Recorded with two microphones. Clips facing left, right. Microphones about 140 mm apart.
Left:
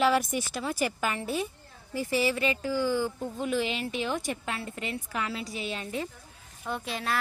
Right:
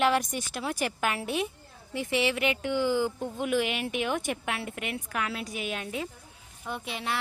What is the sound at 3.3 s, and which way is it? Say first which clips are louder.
Speech: right 1 dB; 5° right (ahead or behind).